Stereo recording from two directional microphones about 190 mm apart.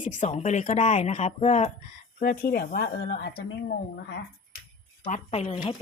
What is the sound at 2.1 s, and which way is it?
Speech, 50° left (ahead or behind).